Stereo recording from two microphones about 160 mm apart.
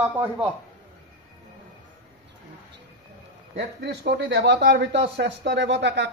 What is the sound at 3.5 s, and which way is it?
Speech, 90° right.